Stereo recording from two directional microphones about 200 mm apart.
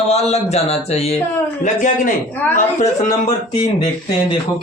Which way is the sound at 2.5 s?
40° left (ahead or behind).